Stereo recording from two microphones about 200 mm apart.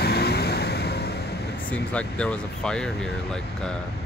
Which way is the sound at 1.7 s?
5° left (ahead or behind).